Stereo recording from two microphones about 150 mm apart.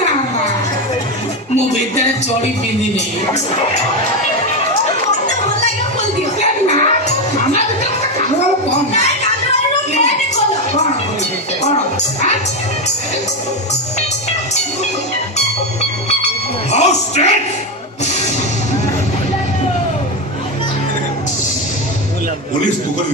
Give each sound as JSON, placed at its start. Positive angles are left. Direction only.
{"t": 1.5, "sound": "music", "side_deg": 50}
{"t": 6.4, "sound": "music", "side_deg": 45}
{"t": 8.9, "sound": "music", "side_deg": 50}
{"t": 9.9, "sound": "a sound", "side_deg": 50}
{"t": 16.7, "sound": "music", "side_deg": 50}